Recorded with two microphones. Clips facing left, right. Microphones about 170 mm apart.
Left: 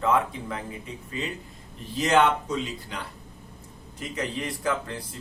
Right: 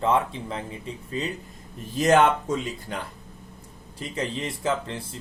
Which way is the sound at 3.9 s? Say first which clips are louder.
Right 1 dB; 30° right (ahead or behind).